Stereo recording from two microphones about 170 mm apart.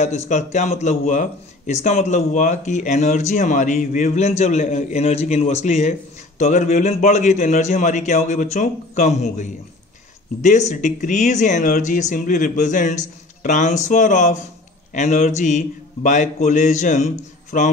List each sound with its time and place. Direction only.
0.3 s a man's voice: 45° left (ahead or behind)
10.7 s a man's voice: 45° left (ahead or behind)